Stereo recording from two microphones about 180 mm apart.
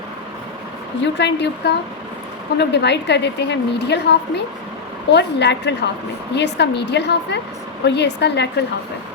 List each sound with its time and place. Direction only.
1.0 s a woman's voice: 75° left (ahead or behind)